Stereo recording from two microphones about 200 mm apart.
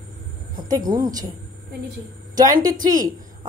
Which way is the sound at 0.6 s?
20° right (ahead or behind).